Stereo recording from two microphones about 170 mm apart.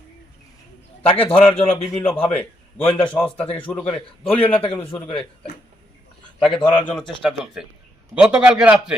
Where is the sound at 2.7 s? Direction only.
10° left (ahead or behind).